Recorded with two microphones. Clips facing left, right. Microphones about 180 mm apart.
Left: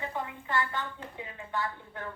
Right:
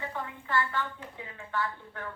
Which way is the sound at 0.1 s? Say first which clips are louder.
Even; 15° left (ahead or behind).